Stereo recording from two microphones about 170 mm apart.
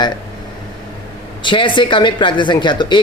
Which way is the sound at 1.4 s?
30° left (ahead or behind).